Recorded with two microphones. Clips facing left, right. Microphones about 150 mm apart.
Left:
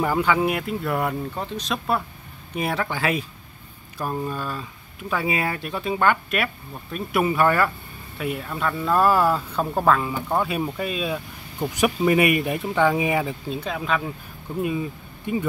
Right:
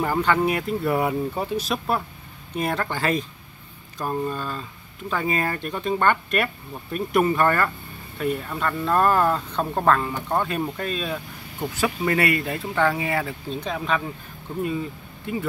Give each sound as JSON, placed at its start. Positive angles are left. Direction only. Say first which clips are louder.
{"t": 0.0, "sound": "speech", "louder": "even", "side_deg": 10}
{"t": 13.5, "sound": "speech", "louder": "even", "side_deg": 5}
{"t": 14.6, "sound": "speech", "louder": "left 1 dB", "side_deg": 20}